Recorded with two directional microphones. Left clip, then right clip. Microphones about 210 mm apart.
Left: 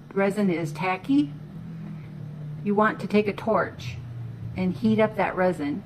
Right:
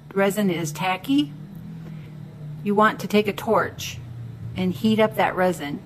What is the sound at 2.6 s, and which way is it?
Speech, 5° right (ahead or behind).